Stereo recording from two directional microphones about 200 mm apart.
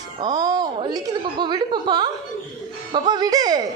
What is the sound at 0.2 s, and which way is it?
A woman's voice, 20° right (ahead or behind).